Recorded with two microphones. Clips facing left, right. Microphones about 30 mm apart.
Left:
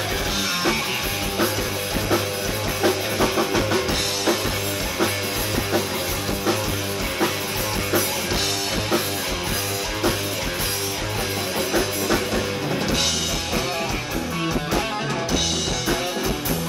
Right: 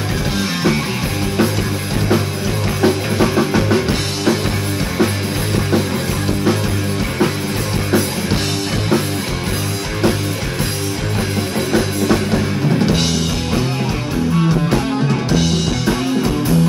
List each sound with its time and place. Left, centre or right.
2.8 s music: right